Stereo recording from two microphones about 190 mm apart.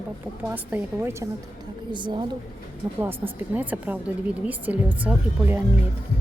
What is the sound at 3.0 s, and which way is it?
A woman's voice, 10° right (ahead or behind).